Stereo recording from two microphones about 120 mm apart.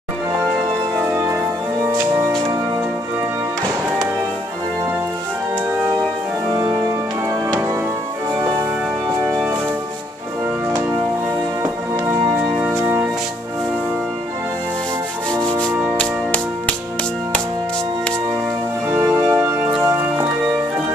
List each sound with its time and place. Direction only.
0.9 s music: 20° right (ahead or behind)
11.6 s music: 15° right (ahead or behind)
15.4 s music: 10° left (ahead or behind)
18.9 s organ: 15° right (ahead or behind)
19.1 s music: 5° right (ahead or behind)